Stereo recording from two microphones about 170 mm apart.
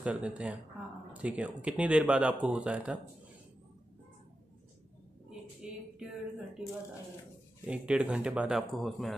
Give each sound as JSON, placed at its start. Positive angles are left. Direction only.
{"t": 0.0, "sound": "speech", "side_deg": -5}
{"t": 5.6, "sound": "a sound", "side_deg": -5}
{"t": 7.6, "sound": "speech", "side_deg": -5}